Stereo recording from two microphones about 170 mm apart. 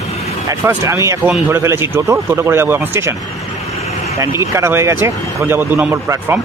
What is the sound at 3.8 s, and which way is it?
Vehicle, 40° left (ahead or behind).